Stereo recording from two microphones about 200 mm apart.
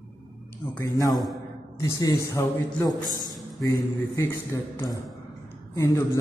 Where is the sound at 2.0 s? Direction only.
15° left (ahead or behind).